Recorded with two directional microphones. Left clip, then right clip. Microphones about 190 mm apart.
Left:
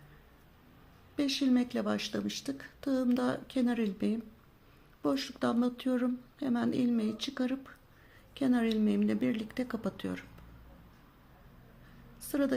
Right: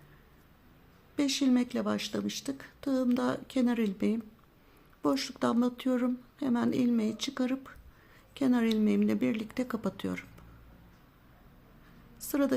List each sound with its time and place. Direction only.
1.1 s speech: 15° right (ahead or behind)
12.3 s speech: 15° right (ahead or behind)